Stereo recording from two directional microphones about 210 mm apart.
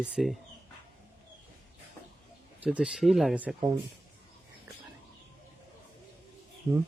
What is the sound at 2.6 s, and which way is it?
Speech, 5° right (ahead or behind).